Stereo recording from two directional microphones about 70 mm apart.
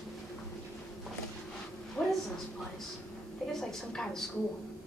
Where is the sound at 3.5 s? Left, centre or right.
Centre.